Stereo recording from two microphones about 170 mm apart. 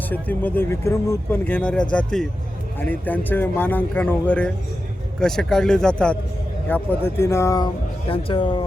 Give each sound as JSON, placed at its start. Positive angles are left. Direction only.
{"t": 0.1, "sound": "speech", "side_deg": 10}
{"t": 8.1, "sound": "speech", "side_deg": 30}